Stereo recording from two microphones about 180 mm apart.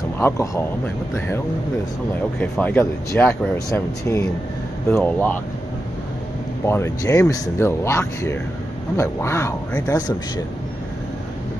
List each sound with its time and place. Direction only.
0.2 s speech: 15° left (ahead or behind)
2.4 s speech: 10° left (ahead or behind)
6.6 s speech: 15° left (ahead or behind)